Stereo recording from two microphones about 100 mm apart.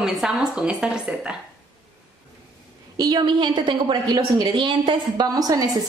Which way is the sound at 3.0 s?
45° right (ahead or behind).